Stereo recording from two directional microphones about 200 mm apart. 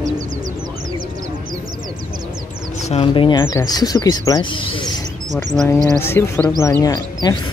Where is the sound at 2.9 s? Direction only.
30° left (ahead or behind).